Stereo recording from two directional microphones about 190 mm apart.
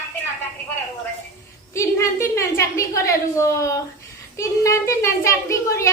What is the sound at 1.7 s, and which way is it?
A child's voice, 15° left (ahead or behind).